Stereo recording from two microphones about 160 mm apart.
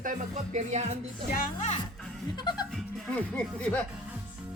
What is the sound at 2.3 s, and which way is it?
Music, 25° left (ahead or behind).